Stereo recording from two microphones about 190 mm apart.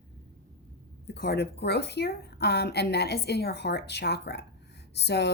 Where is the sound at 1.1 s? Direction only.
60° left (ahead or behind).